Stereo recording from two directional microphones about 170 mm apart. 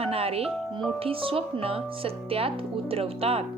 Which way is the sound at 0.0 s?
35° right (ahead or behind).